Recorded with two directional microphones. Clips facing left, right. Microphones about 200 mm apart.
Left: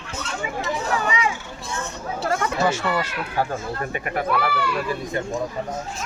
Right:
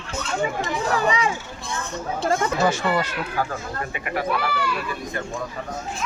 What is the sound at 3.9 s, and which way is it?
Speech, 45° left (ahead or behind).